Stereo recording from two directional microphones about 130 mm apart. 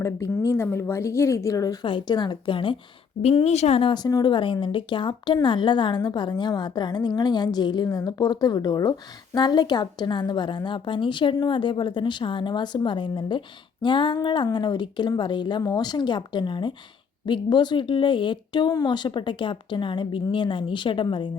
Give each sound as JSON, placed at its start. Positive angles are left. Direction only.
{"t": 0.0, "sound": "a woman's voice", "side_deg": 25}
{"t": 3.2, "sound": "speech", "side_deg": 55}